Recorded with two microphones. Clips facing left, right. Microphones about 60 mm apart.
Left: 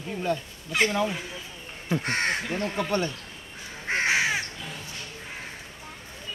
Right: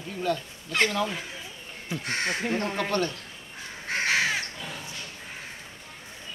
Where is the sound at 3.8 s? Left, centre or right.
Left.